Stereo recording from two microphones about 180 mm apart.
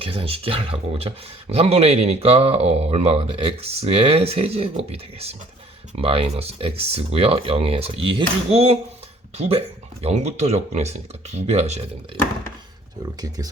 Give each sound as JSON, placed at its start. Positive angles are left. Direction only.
{"t": 0.0, "sound": "speech", "side_deg": -30}
{"t": 10.0, "sound": "speech", "side_deg": -40}
{"t": 13.2, "sound": "speech", "side_deg": -20}